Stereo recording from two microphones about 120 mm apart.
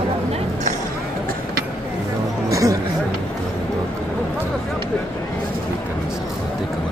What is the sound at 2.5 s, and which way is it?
Speech, 30° right (ahead or behind).